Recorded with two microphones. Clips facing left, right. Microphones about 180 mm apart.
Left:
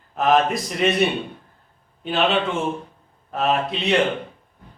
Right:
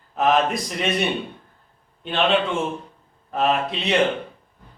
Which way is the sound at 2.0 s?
5° left (ahead or behind).